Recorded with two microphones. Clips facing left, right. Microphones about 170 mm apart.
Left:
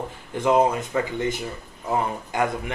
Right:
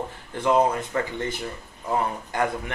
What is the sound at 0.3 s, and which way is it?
A man's voice, 20° left (ahead or behind).